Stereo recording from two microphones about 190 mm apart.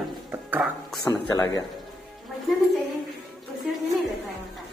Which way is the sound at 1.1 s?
15° left (ahead or behind).